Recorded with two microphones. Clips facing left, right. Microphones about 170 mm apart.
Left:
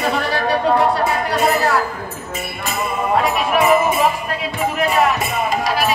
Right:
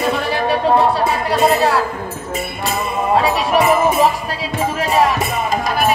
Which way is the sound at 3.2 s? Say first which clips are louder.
Right 1 dB; 35° right (ahead or behind).